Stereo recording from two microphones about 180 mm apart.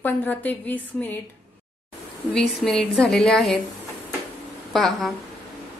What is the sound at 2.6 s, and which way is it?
A woman's voice, 5° left (ahead or behind).